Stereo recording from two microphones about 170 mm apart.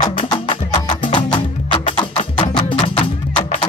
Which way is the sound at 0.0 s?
25° left (ahead or behind).